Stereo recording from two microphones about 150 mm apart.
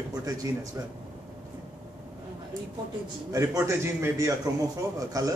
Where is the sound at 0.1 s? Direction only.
25° right (ahead or behind).